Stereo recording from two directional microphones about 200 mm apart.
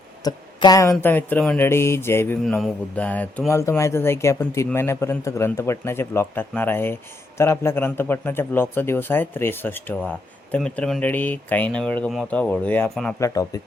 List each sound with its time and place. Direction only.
0.3 s speech: 20° left (ahead or behind)
2.4 s speech: centre (ahead or behind); by 13.6 s 15° left (ahead or behind)